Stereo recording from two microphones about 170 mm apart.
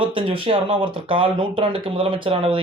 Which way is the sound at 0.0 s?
30° right (ahead or behind).